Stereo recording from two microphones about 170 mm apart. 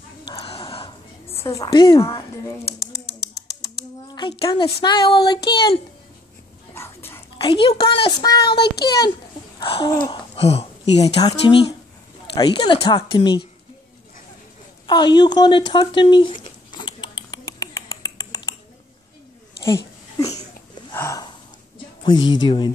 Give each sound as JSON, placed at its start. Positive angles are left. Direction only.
{"t": 0.3, "sound": "a sound", "side_deg": 30}
{"t": 1.4, "sound": "speech", "side_deg": 20}
{"t": 4.5, "sound": "speech", "side_deg": 35}
{"t": 6.7, "sound": "whispering", "side_deg": 15}
{"t": 7.3, "sound": "speech", "side_deg": 30}
{"t": 8.5, "sound": "a child's voice", "side_deg": 75}
{"t": 9.6, "sound": "speech", "side_deg": 30}
{"t": 11.1, "sound": "speech", "side_deg": 25}
{"t": 14.9, "sound": "a sound", "side_deg": 25}
{"t": 20.2, "sound": "a sound", "side_deg": 20}
{"t": 22.3, "sound": "speech", "side_deg": 25}